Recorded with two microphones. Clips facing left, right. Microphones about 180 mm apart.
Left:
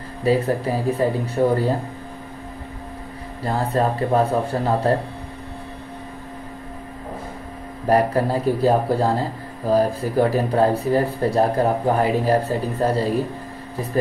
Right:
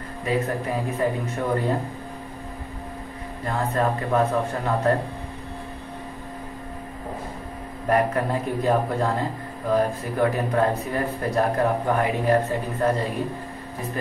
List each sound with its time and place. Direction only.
0.2 s speech: 35° left (ahead or behind)
3.4 s speech: 35° left (ahead or behind)
7.9 s speech: 35° left (ahead or behind)